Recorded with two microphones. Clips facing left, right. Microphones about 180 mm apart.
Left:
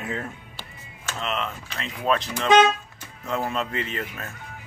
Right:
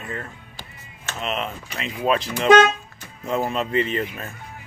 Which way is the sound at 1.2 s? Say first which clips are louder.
Right 2 dB; 20° right (ahead or behind).